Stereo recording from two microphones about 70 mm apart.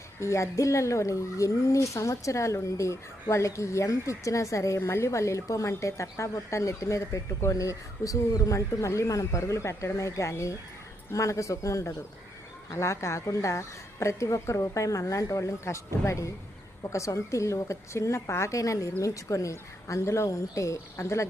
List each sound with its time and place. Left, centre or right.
0.2 s speech: left